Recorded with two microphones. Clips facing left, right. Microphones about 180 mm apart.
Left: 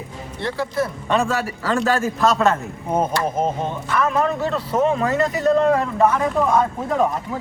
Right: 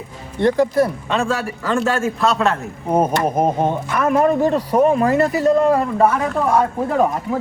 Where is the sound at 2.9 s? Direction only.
15° right (ahead or behind).